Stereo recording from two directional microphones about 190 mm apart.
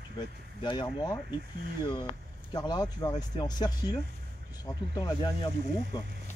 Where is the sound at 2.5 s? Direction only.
20° left (ahead or behind).